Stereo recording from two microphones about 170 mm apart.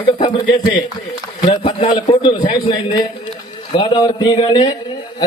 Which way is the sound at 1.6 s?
30° left (ahead or behind).